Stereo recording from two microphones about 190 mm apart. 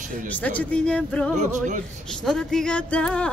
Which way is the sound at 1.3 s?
40° right (ahead or behind).